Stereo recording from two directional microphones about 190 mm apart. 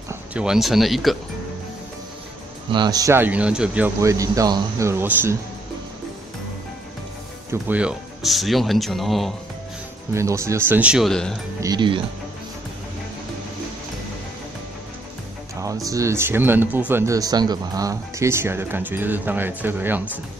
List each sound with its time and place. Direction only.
0.1 s speech: 5° right (ahead or behind)
2.7 s speech: 20° right (ahead or behind)
7.6 s speech: 5° right (ahead or behind)
10.1 s speech: 15° right (ahead or behind); by 11.3 s 5° left (ahead or behind)
11.6 s speech: 25° right (ahead or behind)
15.6 s speech: 15° right (ahead or behind)